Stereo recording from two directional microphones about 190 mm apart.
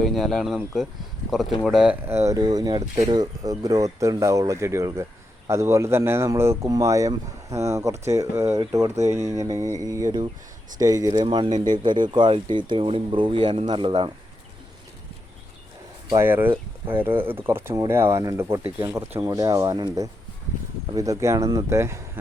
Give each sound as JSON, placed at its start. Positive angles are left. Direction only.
{"t": 0.0, "sound": "speech", "side_deg": 0}
{"t": 16.1, "sound": "speech", "side_deg": -10}